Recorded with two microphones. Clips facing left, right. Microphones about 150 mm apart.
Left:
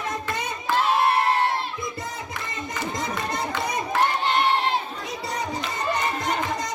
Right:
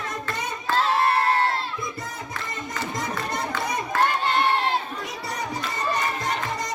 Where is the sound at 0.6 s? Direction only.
15° left (ahead or behind).